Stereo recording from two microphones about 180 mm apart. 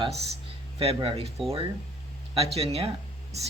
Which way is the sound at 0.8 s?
30° right (ahead or behind).